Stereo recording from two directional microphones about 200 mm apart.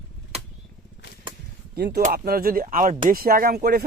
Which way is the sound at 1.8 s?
50° right (ahead or behind).